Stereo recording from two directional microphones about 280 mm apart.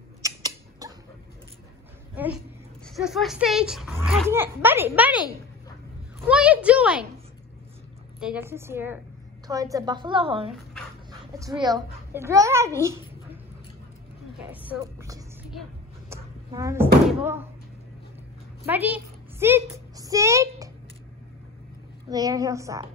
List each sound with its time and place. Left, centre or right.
0.2 s a sound: centre
2.1 s a woman's voice: centre
6.2 s a child's voice: centre
8.2 s a woman's voice: centre
14.5 s speech: centre
16.1 s door: centre
18.7 s a woman's voice: centre
19.4 s a sound: centre
22.1 s a woman's voice: centre